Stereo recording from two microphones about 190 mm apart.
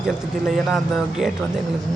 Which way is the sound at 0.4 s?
Centre (ahead or behind).